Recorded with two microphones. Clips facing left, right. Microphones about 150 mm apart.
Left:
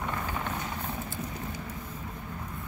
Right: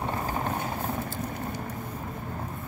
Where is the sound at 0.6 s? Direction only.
55° right (ahead or behind).